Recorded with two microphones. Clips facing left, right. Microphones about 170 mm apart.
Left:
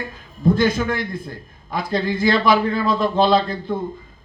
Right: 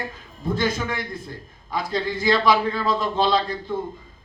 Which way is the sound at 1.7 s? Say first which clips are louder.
Left 3 dB; 55° left (ahead or behind).